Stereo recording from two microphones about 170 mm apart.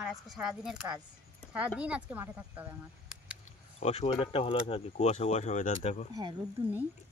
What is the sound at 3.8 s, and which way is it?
Speech, 40° left (ahead or behind).